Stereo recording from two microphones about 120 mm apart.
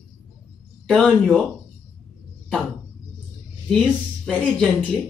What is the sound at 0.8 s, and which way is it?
Speech, 5° left (ahead or behind).